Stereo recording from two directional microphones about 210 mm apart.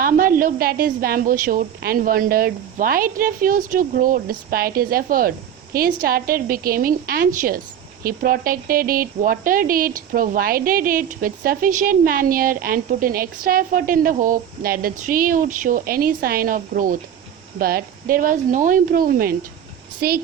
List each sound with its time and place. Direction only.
0.0 s a woman's voice: 40° right (ahead or behind)